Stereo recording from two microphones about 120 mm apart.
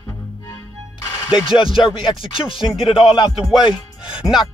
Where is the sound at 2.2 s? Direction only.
50° left (ahead or behind).